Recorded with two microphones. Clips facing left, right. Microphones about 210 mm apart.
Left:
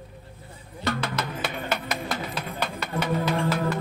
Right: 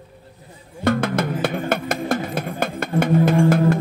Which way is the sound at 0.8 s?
50° right (ahead or behind).